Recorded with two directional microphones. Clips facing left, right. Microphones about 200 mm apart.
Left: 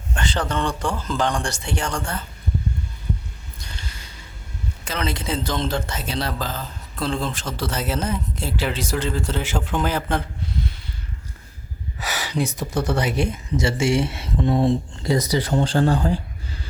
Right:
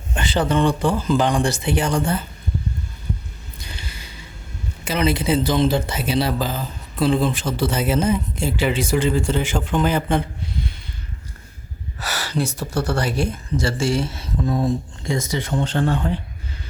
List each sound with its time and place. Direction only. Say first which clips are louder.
0.2 s speech: right 5 dB; 5° right (ahead or behind)
3.6 s squish: right 2 dB; 5° right (ahead or behind)
4.9 s speech: right 7 dB; 10° right (ahead or behind)
11.9 s speech: even; 15° left (ahead or behind); by 16.2 s 40° left (ahead or behind)